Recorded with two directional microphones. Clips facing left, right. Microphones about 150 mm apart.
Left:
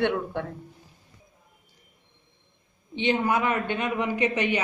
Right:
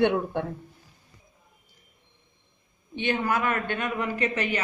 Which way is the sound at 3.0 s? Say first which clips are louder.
Left 2 dB; 20° left (ahead or behind).